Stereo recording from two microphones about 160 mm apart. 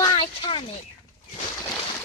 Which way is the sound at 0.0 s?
30° left (ahead or behind).